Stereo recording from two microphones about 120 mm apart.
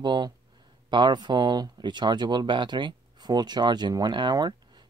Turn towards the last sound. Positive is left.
turn(degrees=-35)  # may be behind; listen again after turning